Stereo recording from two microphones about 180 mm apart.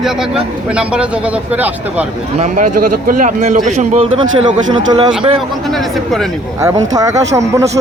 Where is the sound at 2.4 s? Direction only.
45° right (ahead or behind).